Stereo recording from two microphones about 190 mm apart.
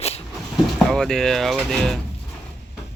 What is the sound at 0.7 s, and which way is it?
Speech, 5° left (ahead or behind).